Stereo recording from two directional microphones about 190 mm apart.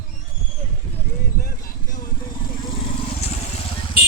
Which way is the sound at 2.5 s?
25° left (ahead or behind).